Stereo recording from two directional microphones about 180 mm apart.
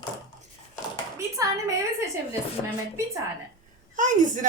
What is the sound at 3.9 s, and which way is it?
Speech, 45° right (ahead or behind).